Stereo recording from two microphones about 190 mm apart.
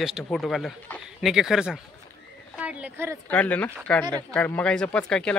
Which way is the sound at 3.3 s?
5° left (ahead or behind).